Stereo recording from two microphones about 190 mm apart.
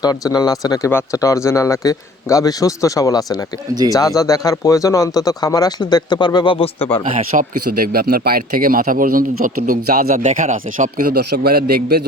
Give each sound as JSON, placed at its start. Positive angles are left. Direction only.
{"t": 0.0, "sound": "a man's voice", "side_deg": 20}
{"t": 7.3, "sound": "speech", "side_deg": -50}